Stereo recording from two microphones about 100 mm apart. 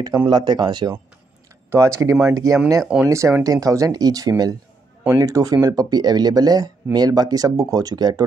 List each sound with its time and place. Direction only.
0.3 s speech: 45° right (ahead or behind)
1.7 s speech: 30° right (ahead or behind)